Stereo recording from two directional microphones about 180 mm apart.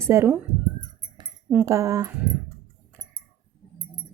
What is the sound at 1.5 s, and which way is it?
Speech, 15° right (ahead or behind).